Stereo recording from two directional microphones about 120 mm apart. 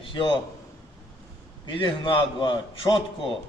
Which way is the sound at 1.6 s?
45° left (ahead or behind).